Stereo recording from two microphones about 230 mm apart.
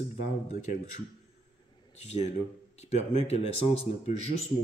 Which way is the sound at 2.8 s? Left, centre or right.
Left.